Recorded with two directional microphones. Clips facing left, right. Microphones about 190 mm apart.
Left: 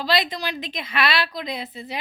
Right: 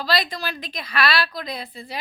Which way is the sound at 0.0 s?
20° left (ahead or behind).